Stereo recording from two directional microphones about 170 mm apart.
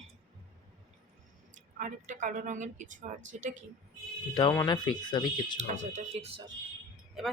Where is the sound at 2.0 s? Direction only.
50° right (ahead or behind).